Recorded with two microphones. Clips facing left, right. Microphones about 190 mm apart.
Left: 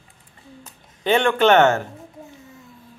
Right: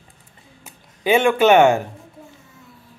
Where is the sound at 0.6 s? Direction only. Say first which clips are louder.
Right 2 dB; 10° right (ahead or behind).